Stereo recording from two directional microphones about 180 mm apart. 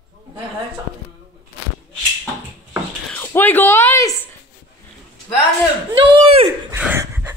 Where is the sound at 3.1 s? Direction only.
10° left (ahead or behind).